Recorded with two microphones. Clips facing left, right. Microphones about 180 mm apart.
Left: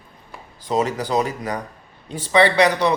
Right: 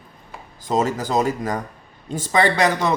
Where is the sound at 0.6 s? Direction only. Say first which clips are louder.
Even; 45° right (ahead or behind).